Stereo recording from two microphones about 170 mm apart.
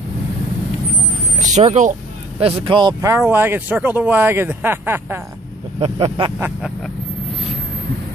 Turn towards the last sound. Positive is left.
turn(degrees=-35)  # may be behind; listen again after turning